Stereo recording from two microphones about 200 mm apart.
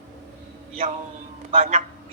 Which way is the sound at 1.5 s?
35° right (ahead or behind).